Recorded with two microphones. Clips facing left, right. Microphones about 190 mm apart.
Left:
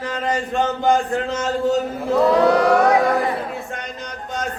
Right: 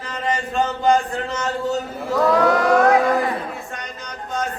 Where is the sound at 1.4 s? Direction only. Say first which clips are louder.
Left 4 dB; 15° left (ahead or behind).